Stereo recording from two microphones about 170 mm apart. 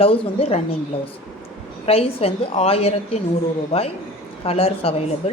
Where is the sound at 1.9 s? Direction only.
35° left (ahead or behind).